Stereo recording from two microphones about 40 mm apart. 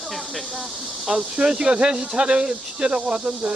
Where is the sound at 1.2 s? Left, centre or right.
Centre.